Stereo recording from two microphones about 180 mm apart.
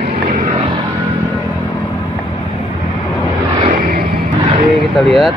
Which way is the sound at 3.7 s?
55° right (ahead or behind).